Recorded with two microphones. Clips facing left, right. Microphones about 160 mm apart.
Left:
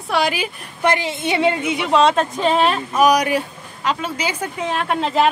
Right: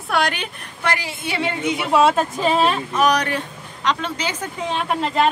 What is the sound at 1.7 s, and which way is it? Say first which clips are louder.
A woman's voice: right 2 dB; 5° right (ahead or behind).